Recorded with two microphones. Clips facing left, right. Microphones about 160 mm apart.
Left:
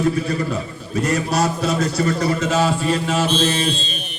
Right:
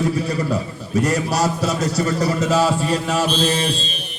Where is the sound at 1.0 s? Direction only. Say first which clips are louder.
Even; 40° right (ahead or behind).